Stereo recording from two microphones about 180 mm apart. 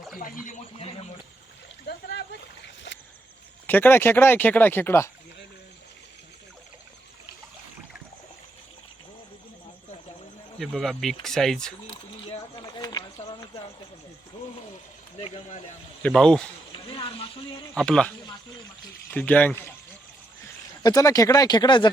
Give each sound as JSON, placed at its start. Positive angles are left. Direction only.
{"t": 3.7, "sound": "speech", "side_deg": 10}
{"t": 10.6, "sound": "speech", "side_deg": 0}
{"t": 11.9, "sound": "a sound", "side_deg": 30}
{"t": 16.0, "sound": "speech", "side_deg": 5}
{"t": 16.7, "sound": "speech", "side_deg": 30}
{"t": 17.7, "sound": "speech", "side_deg": 5}
{"t": 19.1, "sound": "speech", "side_deg": 10}
{"t": 20.8, "sound": "speech", "side_deg": 20}